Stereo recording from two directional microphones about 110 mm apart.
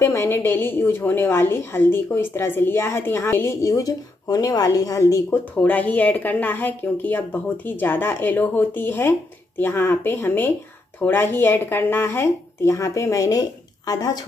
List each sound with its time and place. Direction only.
0.0 s a woman's voice: 25° left (ahead or behind)